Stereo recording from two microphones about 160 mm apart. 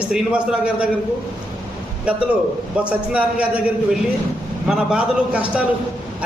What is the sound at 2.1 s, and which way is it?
A man's voice, 5° right (ahead or behind).